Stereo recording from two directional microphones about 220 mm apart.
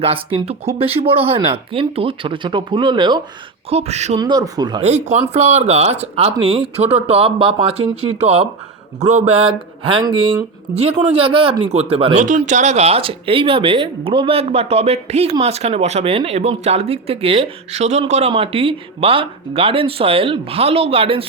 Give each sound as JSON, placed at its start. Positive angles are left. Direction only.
{"t": 0.0, "sound": "speech", "side_deg": -25}
{"t": 4.2, "sound": "speech", "side_deg": -20}